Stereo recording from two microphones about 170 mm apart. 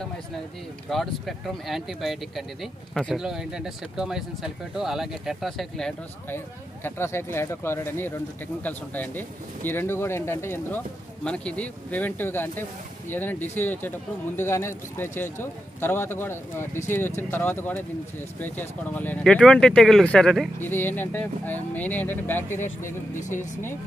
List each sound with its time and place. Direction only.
0.8 s speech: centre (ahead or behind)
6.3 s speech: 15° left (ahead or behind)
22.8 s speech: 50° left (ahead or behind)